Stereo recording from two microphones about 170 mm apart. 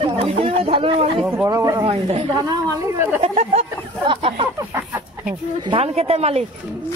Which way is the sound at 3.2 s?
40° right (ahead or behind).